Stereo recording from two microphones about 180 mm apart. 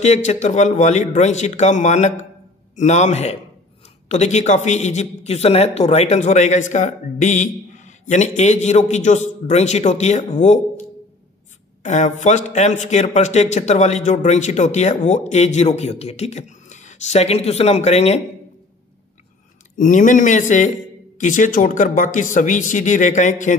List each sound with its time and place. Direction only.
0.0 s a man's voice: 40° left (ahead or behind)
11.8 s a man's voice: 40° left (ahead or behind)
19.8 s speech: 45° left (ahead or behind)